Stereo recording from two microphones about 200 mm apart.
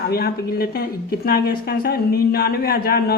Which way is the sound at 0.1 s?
50° left (ahead or behind).